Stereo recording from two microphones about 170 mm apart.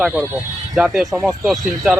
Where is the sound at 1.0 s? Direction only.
20° right (ahead or behind).